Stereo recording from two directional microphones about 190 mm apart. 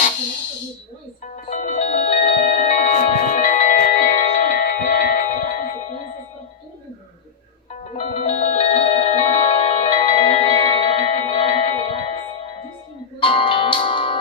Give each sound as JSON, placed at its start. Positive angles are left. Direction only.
{"t": 1.5, "sound": "music", "side_deg": 40}
{"t": 4.5, "sound": "music", "side_deg": 50}
{"t": 5.6, "sound": "music", "side_deg": 40}
{"t": 7.9, "sound": "music", "side_deg": 35}